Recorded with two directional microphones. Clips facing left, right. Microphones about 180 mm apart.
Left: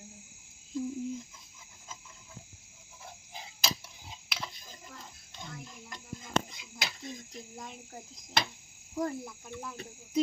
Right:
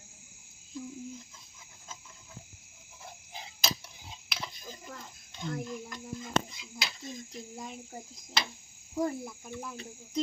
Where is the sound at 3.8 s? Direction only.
5° left (ahead or behind).